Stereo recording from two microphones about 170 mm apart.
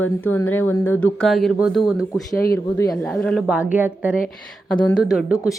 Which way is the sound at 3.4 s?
5° right (ahead or behind).